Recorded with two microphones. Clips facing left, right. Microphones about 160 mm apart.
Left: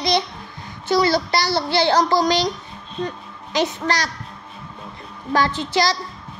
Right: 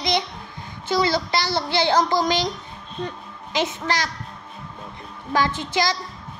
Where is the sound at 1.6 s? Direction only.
15° right (ahead or behind).